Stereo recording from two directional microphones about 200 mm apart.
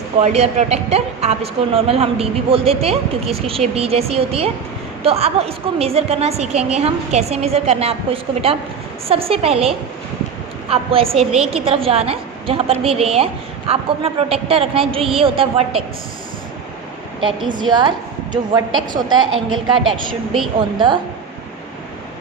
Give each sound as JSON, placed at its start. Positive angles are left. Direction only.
{"t": 0.2, "sound": "a woman's voice", "side_deg": -35}
{"t": 17.6, "sound": "a woman's voice", "side_deg": -20}
{"t": 19.1, "sound": "a woman's voice", "side_deg": -90}
{"t": 20.7, "sound": "a woman's voice", "side_deg": -25}